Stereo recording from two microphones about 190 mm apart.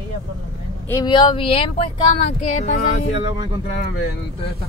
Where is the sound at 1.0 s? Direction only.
25° left (ahead or behind).